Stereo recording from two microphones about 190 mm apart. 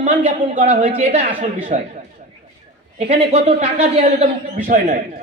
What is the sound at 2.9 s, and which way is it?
A man's voice, 30° right (ahead or behind).